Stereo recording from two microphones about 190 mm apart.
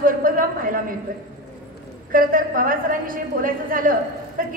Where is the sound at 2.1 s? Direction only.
45° right (ahead or behind).